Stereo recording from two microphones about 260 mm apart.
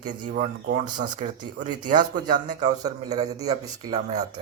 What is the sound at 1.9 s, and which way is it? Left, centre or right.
Speech, right.